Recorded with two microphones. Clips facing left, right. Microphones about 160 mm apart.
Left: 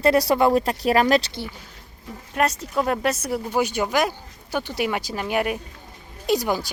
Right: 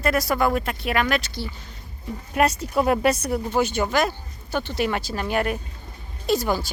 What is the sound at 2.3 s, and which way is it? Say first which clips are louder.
Speech: right 2 dB; centre (ahead or behind).